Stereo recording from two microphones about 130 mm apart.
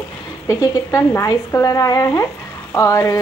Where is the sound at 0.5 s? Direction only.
25° left (ahead or behind).